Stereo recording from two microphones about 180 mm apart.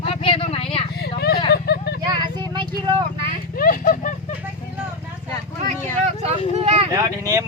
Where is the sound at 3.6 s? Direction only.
50° left (ahead or behind).